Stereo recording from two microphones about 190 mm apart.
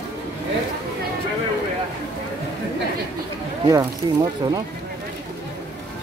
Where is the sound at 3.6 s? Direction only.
20° right (ahead or behind).